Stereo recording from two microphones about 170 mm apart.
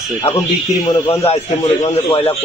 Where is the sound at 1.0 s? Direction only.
35° left (ahead or behind).